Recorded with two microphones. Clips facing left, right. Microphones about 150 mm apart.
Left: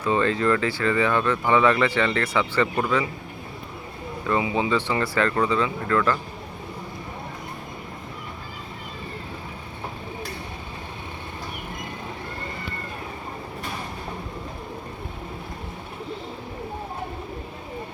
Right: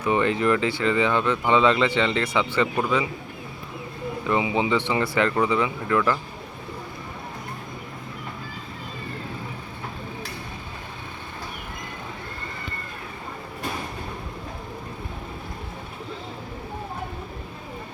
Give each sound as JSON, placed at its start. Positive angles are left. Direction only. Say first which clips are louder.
{"t": 0.0, "sound": "speech", "louder": "even", "side_deg": -20}
{"t": 4.3, "sound": "speech", "louder": "even", "side_deg": -20}